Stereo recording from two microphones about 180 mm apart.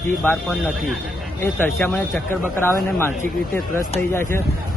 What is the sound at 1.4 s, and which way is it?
Speech, 10° left (ahead or behind).